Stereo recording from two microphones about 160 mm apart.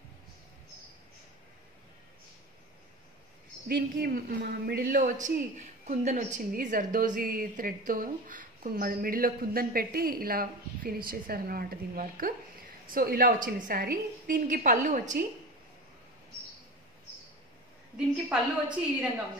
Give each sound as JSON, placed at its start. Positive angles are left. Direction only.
{"t": 3.6, "sound": "a woman's voice", "side_deg": -75}
{"t": 17.9, "sound": "a woman's voice", "side_deg": -5}